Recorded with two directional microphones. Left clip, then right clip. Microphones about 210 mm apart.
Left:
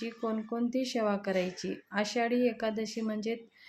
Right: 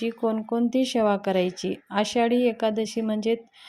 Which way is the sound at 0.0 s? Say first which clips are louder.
Right 9 dB; 30° right (ahead or behind).